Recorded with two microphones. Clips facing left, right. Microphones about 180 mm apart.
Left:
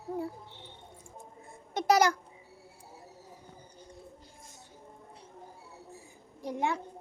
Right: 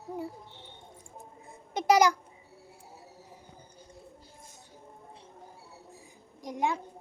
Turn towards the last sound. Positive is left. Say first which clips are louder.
# right 1 dB
turn(degrees=-15)  # may be behind; listen again after turning